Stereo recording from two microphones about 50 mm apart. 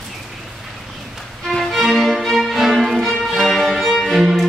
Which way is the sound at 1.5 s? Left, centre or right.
Centre.